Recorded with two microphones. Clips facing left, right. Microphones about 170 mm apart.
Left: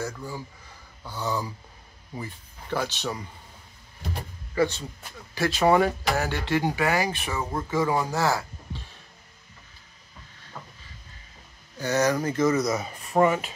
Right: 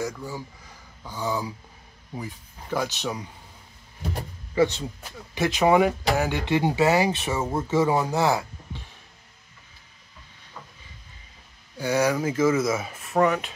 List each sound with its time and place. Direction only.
0.0 s speech: 10° right (ahead or behind)
4.6 s speech: 20° right (ahead or behind)
11.7 s speech: 10° right (ahead or behind)